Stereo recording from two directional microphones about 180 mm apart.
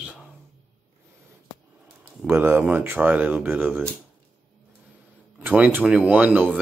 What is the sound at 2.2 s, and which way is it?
Speech, 10° right (ahead or behind).